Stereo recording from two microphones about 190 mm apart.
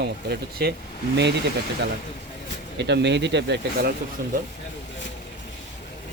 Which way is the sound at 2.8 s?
65° right (ahead or behind).